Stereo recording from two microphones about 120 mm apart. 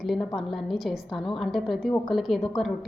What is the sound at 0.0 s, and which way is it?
A woman's voice, centre (ahead or behind).